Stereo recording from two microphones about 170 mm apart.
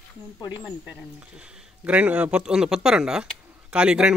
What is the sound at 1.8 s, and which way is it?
Speech, 10° right (ahead or behind).